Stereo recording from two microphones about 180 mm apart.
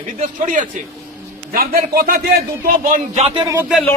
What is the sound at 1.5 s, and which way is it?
Speech, 55° right (ahead or behind).